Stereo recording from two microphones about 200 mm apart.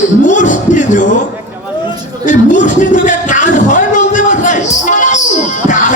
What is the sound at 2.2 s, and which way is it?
Speech, 40° left (ahead or behind).